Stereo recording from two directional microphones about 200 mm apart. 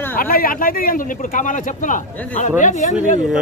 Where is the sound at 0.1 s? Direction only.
45° left (ahead or behind).